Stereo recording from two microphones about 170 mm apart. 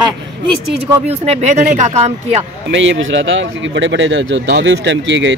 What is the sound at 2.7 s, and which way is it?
A man's voice, 90° right.